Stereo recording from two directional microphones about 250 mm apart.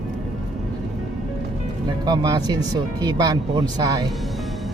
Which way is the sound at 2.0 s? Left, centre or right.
Centre.